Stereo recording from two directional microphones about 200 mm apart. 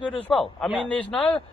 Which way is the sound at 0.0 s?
25° left (ahead or behind).